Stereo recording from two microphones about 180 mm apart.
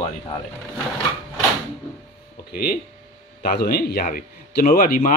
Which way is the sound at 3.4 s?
60° left (ahead or behind).